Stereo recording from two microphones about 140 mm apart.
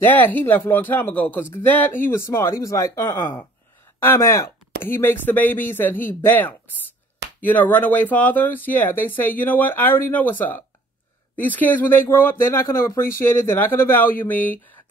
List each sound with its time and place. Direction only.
0.0 s speech: 10° left (ahead or behind)